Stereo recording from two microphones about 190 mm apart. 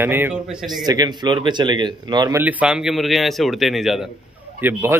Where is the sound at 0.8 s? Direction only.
20° right (ahead or behind).